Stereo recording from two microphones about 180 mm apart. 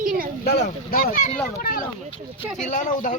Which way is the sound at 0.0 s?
50° right (ahead or behind).